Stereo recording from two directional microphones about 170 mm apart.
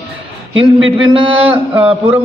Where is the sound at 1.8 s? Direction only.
10° right (ahead or behind).